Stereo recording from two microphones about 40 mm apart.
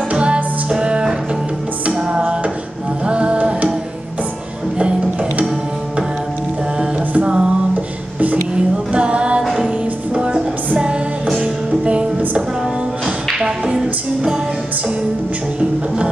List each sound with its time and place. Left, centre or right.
0.1 s music: right
7.2 s music: right
8.5 s music: right
13.7 s music: centre